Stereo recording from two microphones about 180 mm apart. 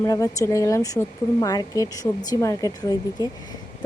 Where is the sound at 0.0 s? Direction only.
15° left (ahead or behind).